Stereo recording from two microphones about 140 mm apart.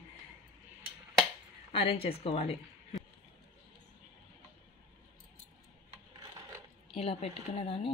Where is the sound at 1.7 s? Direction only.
40° left (ahead or behind).